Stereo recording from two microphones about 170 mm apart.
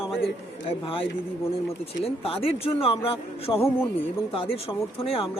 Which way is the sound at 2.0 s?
35° left (ahead or behind).